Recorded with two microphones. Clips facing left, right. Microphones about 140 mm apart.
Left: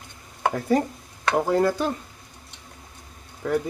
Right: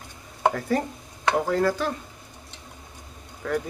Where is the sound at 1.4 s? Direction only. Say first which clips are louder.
Left 4 dB; 20° left (ahead or behind).